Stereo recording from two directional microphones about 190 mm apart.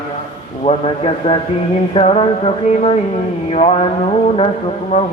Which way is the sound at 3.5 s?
30° left (ahead or behind).